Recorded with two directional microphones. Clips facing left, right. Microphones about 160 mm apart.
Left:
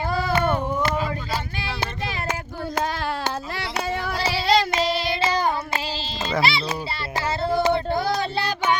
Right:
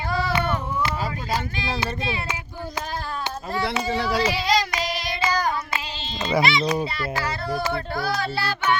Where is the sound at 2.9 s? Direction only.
85° left.